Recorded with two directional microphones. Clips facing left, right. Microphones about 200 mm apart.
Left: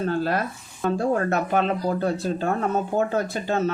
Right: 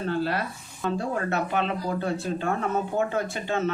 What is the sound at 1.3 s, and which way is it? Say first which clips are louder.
Speech: left 4 dB; 45° left (ahead or behind).